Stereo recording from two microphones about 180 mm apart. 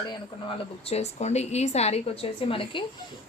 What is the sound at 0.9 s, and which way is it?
Speech, 35° left (ahead or behind).